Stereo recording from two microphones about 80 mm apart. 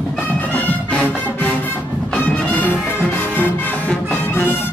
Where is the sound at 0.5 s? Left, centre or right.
Centre.